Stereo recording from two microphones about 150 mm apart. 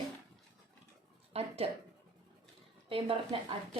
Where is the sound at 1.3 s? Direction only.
40° right (ahead or behind).